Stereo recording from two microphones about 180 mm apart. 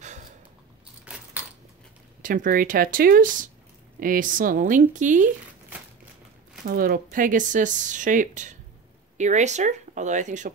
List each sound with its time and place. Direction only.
1.1 s a sound: 5° right (ahead or behind)
2.2 s speech: 50° right (ahead or behind)
6.6 s speech: 55° right (ahead or behind)